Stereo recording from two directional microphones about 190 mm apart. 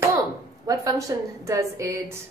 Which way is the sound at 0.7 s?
15° right (ahead or behind).